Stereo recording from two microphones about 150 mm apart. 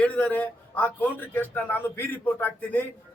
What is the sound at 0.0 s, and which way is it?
A man's voice, 10° left (ahead or behind).